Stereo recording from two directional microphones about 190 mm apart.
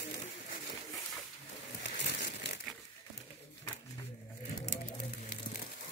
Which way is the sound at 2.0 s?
60° left (ahead or behind).